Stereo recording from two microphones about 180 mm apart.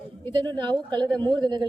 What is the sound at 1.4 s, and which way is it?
Speech, 25° right (ahead or behind).